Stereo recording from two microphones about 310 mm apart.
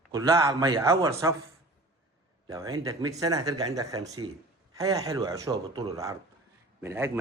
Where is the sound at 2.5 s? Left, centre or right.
Centre.